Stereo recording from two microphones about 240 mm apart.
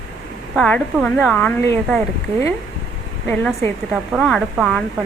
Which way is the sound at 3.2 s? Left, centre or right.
Centre.